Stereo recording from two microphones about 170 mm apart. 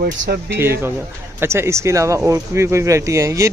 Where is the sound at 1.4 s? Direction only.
15° right (ahead or behind).